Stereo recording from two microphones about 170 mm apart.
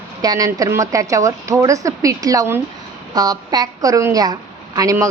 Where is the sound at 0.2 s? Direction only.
20° right (ahead or behind).